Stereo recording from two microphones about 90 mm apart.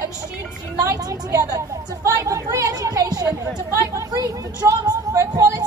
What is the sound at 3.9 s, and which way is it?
Speech, 35° right (ahead or behind).